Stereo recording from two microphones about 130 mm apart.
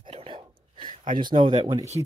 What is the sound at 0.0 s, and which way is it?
Whispering, 45° right (ahead or behind).